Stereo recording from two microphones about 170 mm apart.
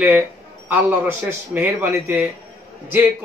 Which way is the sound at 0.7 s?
10° right (ahead or behind).